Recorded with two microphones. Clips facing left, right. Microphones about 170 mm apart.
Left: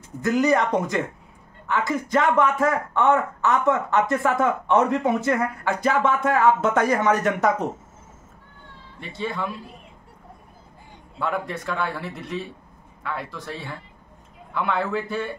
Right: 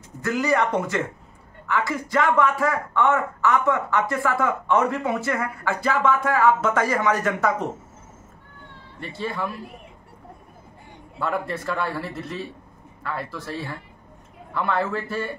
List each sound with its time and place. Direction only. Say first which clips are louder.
0.2 s a man's voice: left 2 dB; 20° left (ahead or behind)
9.1 s a man's voice: even; centre (ahead or behind)
11.1 s a man's voice: right 1 dB; centre (ahead or behind)